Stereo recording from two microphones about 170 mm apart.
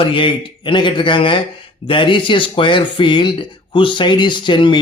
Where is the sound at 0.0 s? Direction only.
30° left (ahead or behind).